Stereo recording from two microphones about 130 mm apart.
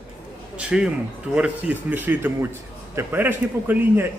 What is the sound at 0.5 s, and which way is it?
A man's voice, 5° right (ahead or behind).